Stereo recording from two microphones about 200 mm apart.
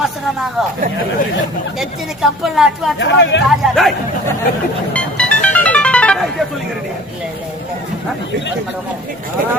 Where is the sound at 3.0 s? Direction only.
60° left (ahead or behind).